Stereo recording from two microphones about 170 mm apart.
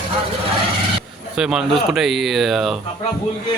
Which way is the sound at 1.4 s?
5° right (ahead or behind).